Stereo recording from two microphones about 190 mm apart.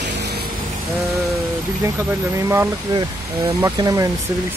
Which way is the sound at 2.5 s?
15° right (ahead or behind).